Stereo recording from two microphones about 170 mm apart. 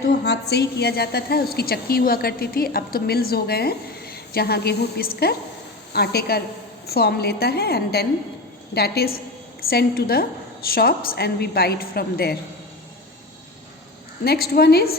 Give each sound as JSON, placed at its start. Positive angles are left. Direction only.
{"t": 0.1, "sound": "a woman's voice", "side_deg": 75}
{"t": 14.3, "sound": "a woman's voice", "side_deg": 65}